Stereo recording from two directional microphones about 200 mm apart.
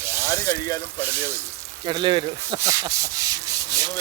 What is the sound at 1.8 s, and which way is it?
Rub, 20° right (ahead or behind).